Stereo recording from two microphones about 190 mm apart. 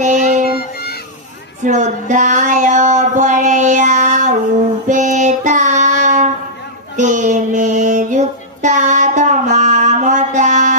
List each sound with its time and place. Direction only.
0.0 s child singing: 40° right (ahead or behind)
1.6 s child singing: 40° right (ahead or behind)